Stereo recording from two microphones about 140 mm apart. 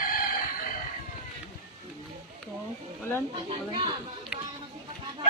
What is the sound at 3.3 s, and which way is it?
Speech, 35° right (ahead or behind).